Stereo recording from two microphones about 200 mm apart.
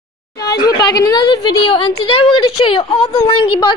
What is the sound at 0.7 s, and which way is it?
A woman's voice, 20° left (ahead or behind).